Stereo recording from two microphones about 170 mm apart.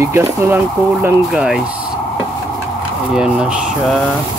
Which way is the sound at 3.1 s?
5° right (ahead or behind).